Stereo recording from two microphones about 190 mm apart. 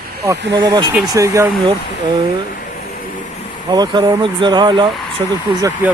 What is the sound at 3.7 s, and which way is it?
Speech, 20° right (ahead or behind).